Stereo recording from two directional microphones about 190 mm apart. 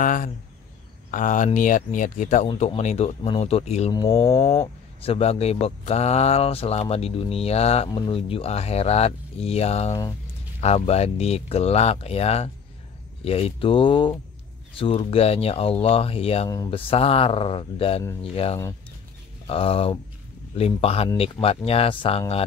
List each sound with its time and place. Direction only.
0.0 s speech: 45° left (ahead or behind)
3.9 s speech: 20° left (ahead or behind)
4.5 s speech: 30° left (ahead or behind)